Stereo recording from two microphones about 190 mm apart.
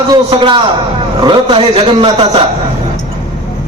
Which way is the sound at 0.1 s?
25° right (ahead or behind).